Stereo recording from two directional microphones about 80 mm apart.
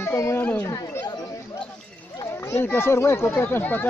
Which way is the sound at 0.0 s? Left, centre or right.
Left.